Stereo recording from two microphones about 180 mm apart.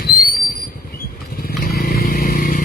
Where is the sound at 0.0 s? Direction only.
55° left (ahead or behind).